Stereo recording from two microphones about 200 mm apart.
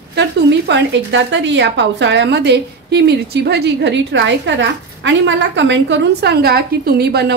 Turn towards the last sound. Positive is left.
turn(degrees=-55)  # may be behind; listen again after turning